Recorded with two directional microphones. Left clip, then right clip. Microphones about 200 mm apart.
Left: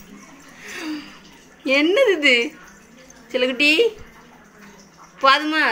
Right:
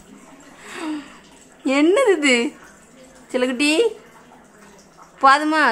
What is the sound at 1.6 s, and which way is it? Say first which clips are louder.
Speech: even; 20° right (ahead or behind).